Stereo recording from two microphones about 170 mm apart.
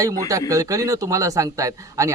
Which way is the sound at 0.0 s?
20° right (ahead or behind).